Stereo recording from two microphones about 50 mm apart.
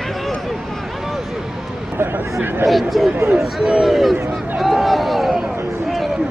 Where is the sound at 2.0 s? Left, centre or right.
Right.